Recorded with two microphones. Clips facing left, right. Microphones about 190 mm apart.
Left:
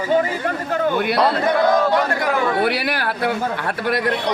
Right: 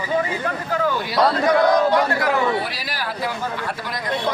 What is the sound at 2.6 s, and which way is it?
A man's voice, 65° left (ahead or behind).